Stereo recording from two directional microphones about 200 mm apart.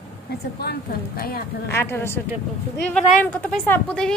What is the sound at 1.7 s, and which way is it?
A woman's voice, 10° left (ahead or behind).